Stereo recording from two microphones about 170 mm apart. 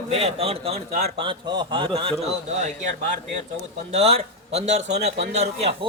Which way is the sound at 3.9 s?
40° right (ahead or behind).